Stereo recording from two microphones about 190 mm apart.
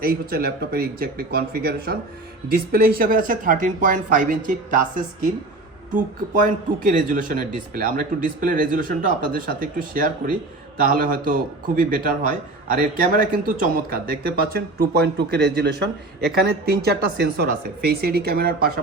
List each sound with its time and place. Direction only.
0.0 s speech: 55° right (ahead or behind)